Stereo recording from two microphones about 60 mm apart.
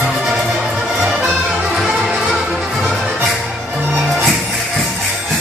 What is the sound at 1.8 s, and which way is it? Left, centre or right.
Music, centre.